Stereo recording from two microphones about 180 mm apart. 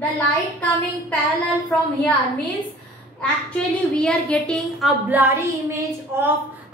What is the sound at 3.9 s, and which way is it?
Speech, 5° left (ahead or behind).